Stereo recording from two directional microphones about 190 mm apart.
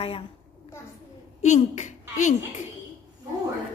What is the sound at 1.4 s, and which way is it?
Speech, 40° left (ahead or behind).